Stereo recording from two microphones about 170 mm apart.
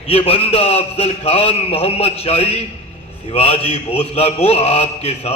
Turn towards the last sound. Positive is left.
turn(degrees=40)  # may be behind; listen again after turning